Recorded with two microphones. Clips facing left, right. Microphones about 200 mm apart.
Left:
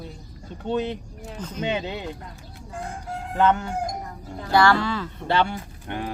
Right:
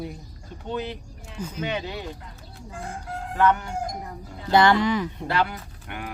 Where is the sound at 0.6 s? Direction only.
25° left (ahead or behind).